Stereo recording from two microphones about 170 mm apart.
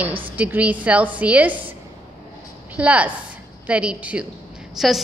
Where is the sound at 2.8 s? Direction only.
10° right (ahead or behind).